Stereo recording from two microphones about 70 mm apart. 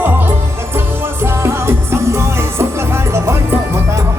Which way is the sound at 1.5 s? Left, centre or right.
Right.